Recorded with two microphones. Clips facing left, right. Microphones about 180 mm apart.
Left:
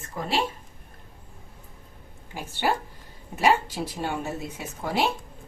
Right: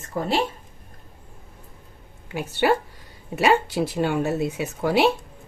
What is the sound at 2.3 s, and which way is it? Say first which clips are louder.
Speech: right 6 dB; 75° right (ahead or behind).